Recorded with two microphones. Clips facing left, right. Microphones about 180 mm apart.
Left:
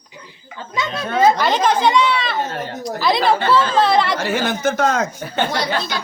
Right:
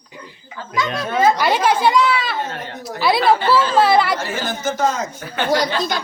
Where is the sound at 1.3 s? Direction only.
10° right (ahead or behind).